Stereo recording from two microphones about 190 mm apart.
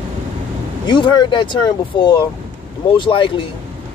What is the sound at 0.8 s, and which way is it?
Speech, 25° left (ahead or behind).